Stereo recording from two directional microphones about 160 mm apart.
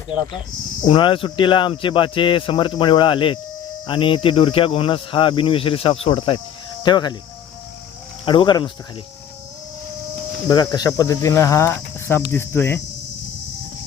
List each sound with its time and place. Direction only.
0.9 s speech: 30° left (ahead or behind)
8.2 s speech: 30° left (ahead or behind)
10.5 s speech: 25° left (ahead or behind)
12.3 s cricket: 15° left (ahead or behind)